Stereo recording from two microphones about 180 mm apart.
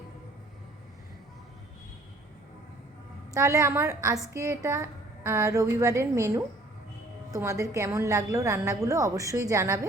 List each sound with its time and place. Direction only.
3.3 s a woman's voice: 15° right (ahead or behind)